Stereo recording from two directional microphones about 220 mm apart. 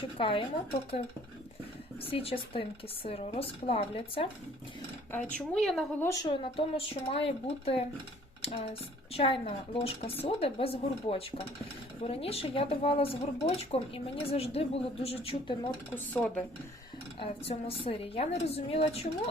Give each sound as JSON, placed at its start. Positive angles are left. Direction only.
{"t": 0.2, "sound": "speech", "side_deg": 25}
{"t": 2.0, "sound": "speech", "side_deg": 25}
{"t": 5.1, "sound": "speech", "side_deg": 0}
{"t": 6.2, "sound": "speech", "side_deg": 25}
{"t": 17.2, "sound": "speech", "side_deg": 25}